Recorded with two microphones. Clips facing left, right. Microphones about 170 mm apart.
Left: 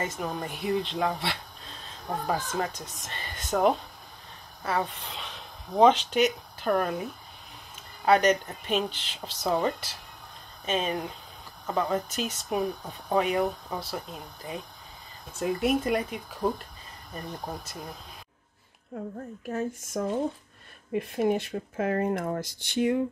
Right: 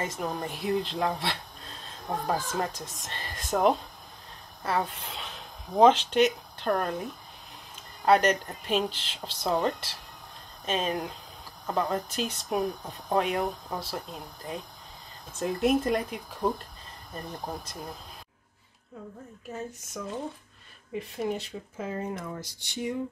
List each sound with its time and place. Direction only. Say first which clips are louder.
0.0 s speech: even; centre (ahead or behind)
19.5 s speech: left 7 dB; 55° left (ahead or behind)